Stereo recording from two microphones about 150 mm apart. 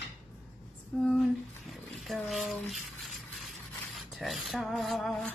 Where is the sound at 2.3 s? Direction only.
Centre (ahead or behind).